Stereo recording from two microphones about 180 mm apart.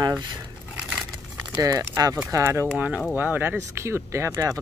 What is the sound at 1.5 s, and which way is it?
Speech, 15° right (ahead or behind).